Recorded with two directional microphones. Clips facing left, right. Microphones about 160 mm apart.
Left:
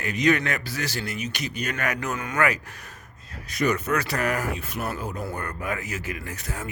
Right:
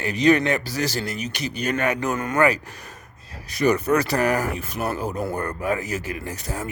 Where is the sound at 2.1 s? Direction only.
45° right (ahead or behind).